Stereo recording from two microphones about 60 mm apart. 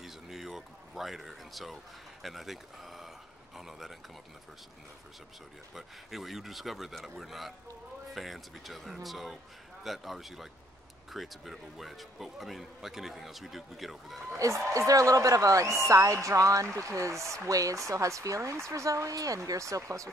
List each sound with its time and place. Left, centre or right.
0.0 s a sound: centre
2.2 s speech: centre
5.8 s speech: centre
14.3 s speech: right
14.7 s speech: right
16.6 s speech: right